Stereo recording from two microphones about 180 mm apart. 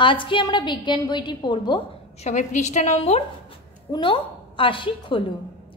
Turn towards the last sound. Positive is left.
turn(degrees=30)  # may be behind; listen again after turning